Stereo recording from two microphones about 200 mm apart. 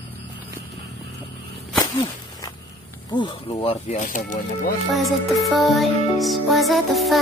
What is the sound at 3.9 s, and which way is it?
Speech, 40° left (ahead or behind).